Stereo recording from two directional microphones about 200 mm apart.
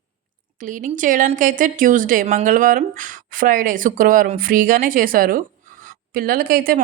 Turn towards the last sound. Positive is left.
turn(degrees=-45)  # may be behind; listen again after turning